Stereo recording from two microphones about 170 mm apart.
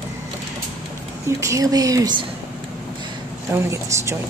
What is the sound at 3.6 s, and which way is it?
Speech, 15° right (ahead or behind).